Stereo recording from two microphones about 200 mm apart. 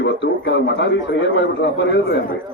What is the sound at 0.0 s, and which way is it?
A man's voice, 60° left (ahead or behind).